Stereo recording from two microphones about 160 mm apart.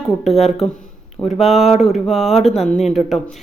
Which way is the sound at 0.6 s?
Centre (ahead or behind).